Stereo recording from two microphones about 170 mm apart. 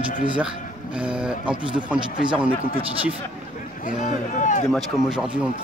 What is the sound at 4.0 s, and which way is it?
Speech, 45° left (ahead or behind).